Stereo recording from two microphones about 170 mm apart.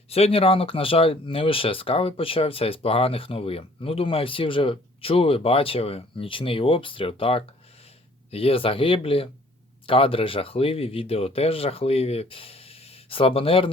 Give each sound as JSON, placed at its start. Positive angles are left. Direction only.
{"t": 0.1, "sound": "speech", "side_deg": 35}